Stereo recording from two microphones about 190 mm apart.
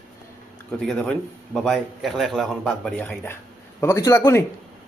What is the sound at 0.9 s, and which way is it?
A man's voice, centre (ahead or behind).